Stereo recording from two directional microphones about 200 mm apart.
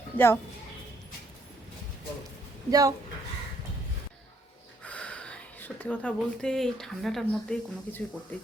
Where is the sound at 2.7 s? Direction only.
20° right (ahead or behind).